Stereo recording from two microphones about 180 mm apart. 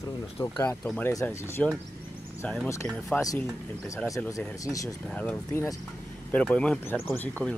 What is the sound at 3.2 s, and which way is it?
Speech, 20° left (ahead or behind).